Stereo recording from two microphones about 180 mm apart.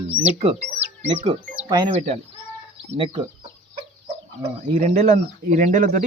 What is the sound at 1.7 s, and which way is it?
Speech, 30° right (ahead or behind).